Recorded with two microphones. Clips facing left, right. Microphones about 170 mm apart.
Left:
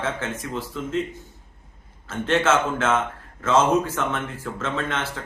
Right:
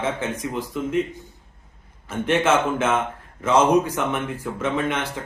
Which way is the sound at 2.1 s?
15° right (ahead or behind).